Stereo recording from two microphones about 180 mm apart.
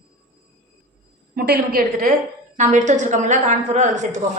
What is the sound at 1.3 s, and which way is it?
A woman's voice, 60° right (ahead or behind).